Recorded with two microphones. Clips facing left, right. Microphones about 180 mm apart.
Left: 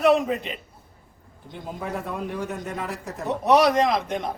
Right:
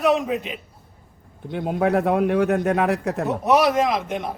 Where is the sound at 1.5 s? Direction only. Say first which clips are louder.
Right 11 dB; 65° right (ahead or behind).